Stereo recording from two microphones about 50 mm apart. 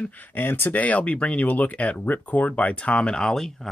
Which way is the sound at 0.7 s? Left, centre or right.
Left.